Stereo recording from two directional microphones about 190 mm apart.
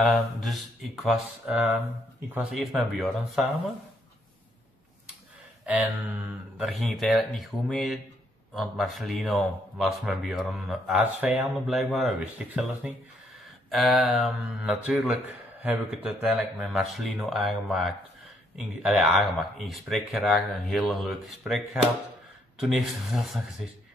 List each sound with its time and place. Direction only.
0.4 s speech: centre (ahead or behind)
5.7 s speech: 10° right (ahead or behind)